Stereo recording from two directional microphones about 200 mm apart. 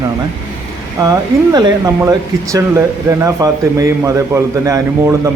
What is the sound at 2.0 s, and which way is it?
Speech, 15° right (ahead or behind).